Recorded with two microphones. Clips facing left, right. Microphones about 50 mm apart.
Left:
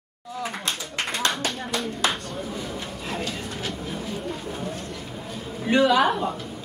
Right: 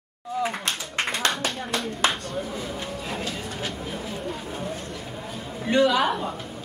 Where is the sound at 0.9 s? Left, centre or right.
Right.